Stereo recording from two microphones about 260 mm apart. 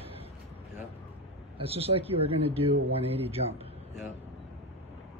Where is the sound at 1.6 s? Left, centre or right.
Right.